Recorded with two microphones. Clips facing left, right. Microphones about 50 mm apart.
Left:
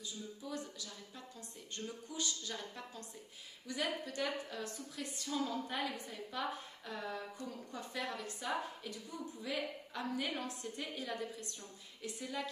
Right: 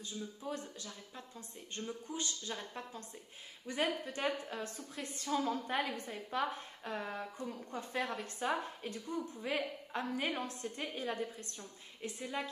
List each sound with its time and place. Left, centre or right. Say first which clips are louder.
0.0 s a woman's voice: right 3 dB; right